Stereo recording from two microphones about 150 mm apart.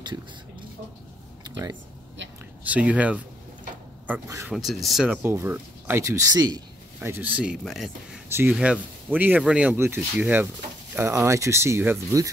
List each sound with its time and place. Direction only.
0.0 s a sound: 30° right (ahead or behind)
1.4 s speech: 30° right (ahead or behind)
2.6 s speech: 10° right (ahead or behind)
5.2 s speech: 15° right (ahead or behind)
7.0 s speech: 10° right (ahead or behind)
8.3 s speech: 15° right (ahead or behind)